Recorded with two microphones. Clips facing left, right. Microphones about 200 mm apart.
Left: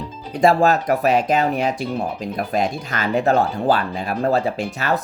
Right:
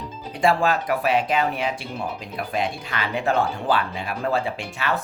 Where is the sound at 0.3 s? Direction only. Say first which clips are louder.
Left 5 dB; 40° left (ahead or behind).